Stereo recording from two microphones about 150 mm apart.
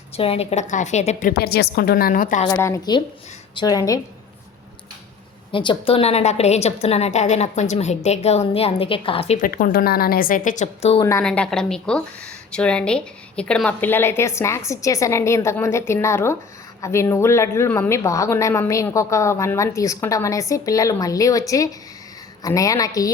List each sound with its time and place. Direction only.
0.2 s a woman's voice: 40° left (ahead or behind)
1.3 s a woman's voice: 90° left; by 2.4 s 65° left (ahead or behind)
2.5 s speech: 20° left (ahead or behind)
5.5 s a woman's voice: 35° left (ahead or behind)
9.4 s a woman's voice: 65° left (ahead or behind); by 11.0 s 45° left (ahead or behind)
11.2 s a woman's voice: 5° left (ahead or behind); by 23.0 s 25° left (ahead or behind)